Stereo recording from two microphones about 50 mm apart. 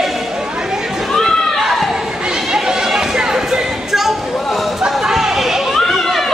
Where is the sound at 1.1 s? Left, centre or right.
Centre.